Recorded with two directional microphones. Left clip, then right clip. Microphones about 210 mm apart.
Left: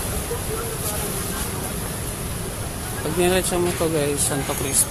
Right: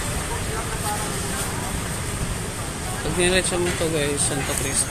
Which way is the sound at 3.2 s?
15° left (ahead or behind).